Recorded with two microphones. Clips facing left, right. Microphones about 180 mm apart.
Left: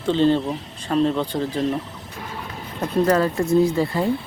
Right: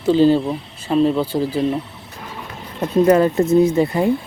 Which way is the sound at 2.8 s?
10° right (ahead or behind).